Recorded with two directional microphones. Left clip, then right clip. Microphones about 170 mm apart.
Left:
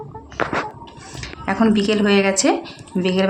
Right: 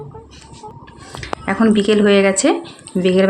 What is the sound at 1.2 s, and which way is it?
Speech, 20° right (ahead or behind).